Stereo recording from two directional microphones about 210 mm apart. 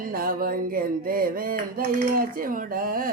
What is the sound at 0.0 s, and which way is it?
Mantra, 40° right (ahead or behind).